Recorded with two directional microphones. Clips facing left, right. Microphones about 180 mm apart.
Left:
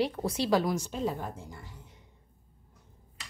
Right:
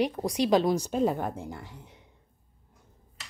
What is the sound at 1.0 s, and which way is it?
Speech, 55° right (ahead or behind).